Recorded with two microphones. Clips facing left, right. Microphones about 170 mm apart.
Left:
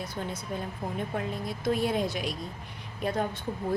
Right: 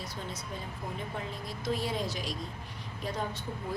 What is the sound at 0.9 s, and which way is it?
A woman's voice, 60° left (ahead or behind).